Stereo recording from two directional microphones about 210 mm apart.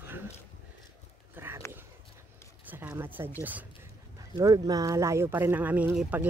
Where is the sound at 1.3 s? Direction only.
10° right (ahead or behind).